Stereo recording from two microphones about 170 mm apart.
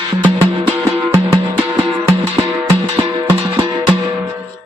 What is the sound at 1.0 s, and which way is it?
Music, 20° right (ahead or behind).